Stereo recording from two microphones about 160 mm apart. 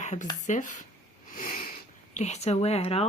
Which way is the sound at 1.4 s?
55° left (ahead or behind).